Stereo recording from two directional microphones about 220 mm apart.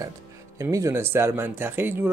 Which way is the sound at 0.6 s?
15° right (ahead or behind).